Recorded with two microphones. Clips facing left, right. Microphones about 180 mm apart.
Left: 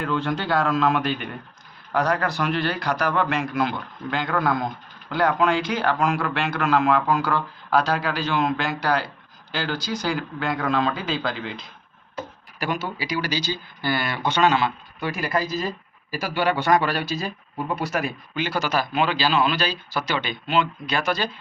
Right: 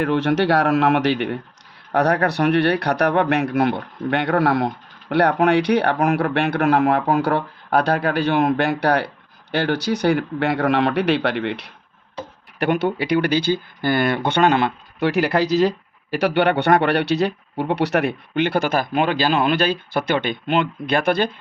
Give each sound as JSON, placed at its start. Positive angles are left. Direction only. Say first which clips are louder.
{"t": 0.0, "sound": "speech", "louder": "right 7 dB", "side_deg": -70}
{"t": 12.5, "sound": "speech", "louder": "right 8 dB", "side_deg": -60}